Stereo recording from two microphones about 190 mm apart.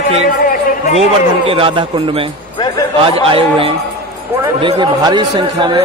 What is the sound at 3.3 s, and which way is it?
A man's voice, 30° right (ahead or behind).